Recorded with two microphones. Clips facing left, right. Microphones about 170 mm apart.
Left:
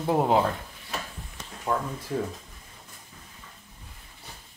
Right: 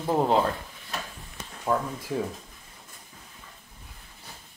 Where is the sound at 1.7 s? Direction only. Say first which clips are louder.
Right 2 dB; 5° right (ahead or behind).